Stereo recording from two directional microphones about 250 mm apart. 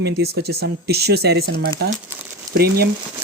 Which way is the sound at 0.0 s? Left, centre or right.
Right.